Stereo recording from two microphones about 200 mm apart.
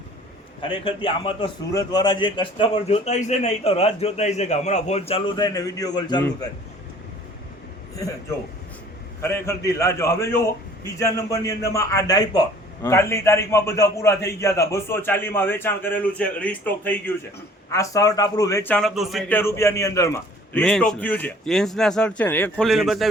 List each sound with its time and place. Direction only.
0.7 s a man's voice: 25° left (ahead or behind)
9.2 s a man's voice: 15° left (ahead or behind)
19.4 s a man's voice: 15° left (ahead or behind)